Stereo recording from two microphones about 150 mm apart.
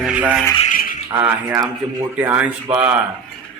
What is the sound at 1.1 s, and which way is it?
Speech, 15° right (ahead or behind).